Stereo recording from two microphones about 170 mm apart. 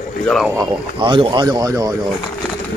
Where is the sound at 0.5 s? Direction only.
30° right (ahead or behind).